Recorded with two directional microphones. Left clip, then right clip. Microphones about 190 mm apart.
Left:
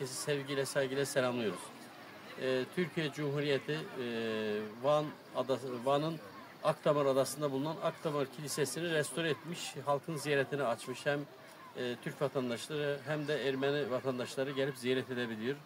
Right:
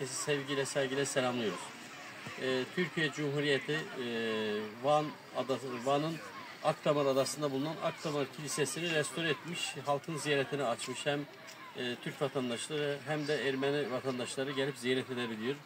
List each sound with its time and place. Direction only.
0.3 s a man's voice: 5° left (ahead or behind)
2.4 s speech: 5° left (ahead or behind)
10.3 s a man's voice: 5° left (ahead or behind)
12.2 s a man's voice: 10° left (ahead or behind)